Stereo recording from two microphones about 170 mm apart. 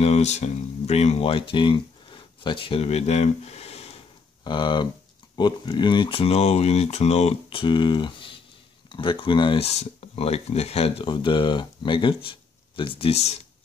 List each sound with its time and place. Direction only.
0.0 s speech: 40° left (ahead or behind)